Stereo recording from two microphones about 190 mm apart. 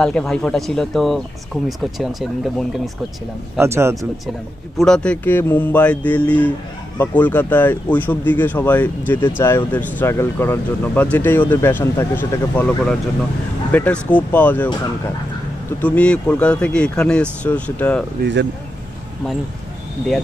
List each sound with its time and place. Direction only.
0.0 s speech: 5° left (ahead or behind)
3.5 s speech: 15° right (ahead or behind)
4.7 s speech: 5° left (ahead or behind)
15.8 s speech: 5° left (ahead or behind)
18.2 s speech: 65° right (ahead or behind)